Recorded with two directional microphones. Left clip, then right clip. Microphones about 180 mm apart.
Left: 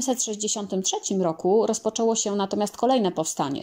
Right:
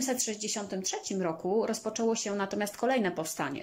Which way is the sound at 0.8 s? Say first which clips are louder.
Left 8 dB; 20° left (ahead or behind).